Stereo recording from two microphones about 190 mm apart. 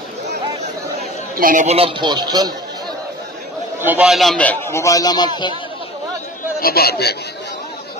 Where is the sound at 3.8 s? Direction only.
5° right (ahead or behind); by 5.5 s 20° left (ahead or behind).